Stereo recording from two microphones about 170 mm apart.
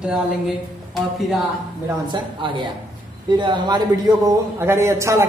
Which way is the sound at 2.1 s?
30° right (ahead or behind).